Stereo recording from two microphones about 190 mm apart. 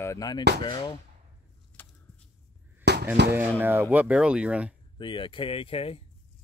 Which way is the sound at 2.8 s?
60° right (ahead or behind).